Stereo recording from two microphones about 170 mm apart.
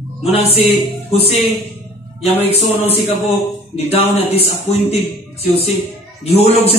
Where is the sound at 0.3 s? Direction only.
35° left (ahead or behind).